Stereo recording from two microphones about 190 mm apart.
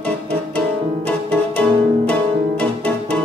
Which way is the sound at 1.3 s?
5° left (ahead or behind).